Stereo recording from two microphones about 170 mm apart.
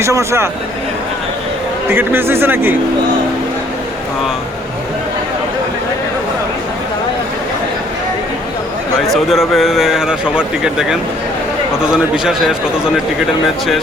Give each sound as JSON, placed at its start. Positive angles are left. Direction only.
{"t": 0.0, "sound": "speech", "side_deg": -15}
{"t": 1.9, "sound": "speech", "side_deg": -15}
{"t": 9.3, "sound": "a man's voice", "side_deg": 0}